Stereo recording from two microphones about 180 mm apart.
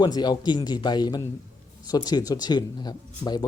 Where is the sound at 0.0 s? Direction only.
25° left (ahead or behind).